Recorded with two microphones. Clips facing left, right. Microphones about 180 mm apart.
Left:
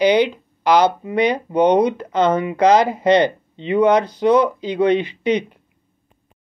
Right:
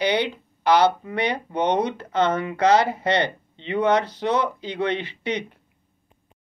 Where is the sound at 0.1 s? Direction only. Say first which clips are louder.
Left 7 dB; 15° left (ahead or behind).